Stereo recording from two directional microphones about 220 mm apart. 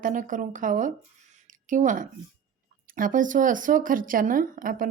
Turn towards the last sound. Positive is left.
turn(degrees=-40)  # may be behind; listen again after turning